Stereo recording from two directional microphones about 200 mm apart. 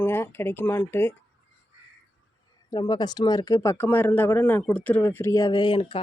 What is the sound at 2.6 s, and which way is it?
Speech, 20° left (ahead or behind).